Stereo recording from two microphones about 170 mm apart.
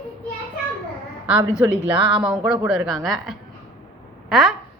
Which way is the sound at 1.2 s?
10° right (ahead or behind).